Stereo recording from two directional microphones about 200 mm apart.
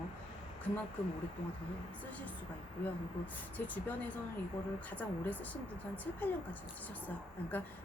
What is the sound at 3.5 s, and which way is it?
A woman's voice, 10° left (ahead or behind).